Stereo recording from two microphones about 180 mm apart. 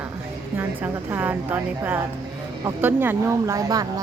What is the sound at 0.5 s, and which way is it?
Speech, 10° right (ahead or behind).